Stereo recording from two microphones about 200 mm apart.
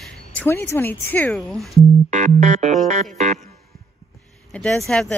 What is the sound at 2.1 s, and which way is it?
Music, 35° right (ahead or behind).